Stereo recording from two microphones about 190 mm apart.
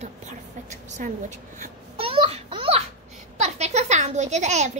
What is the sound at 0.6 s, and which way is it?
Speech, 40° right (ahead or behind).